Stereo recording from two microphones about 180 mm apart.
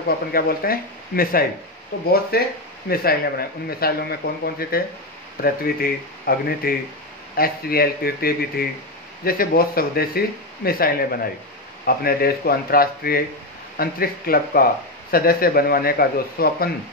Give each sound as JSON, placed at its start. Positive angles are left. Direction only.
{"t": 0.3, "sound": "speech", "side_deg": 55}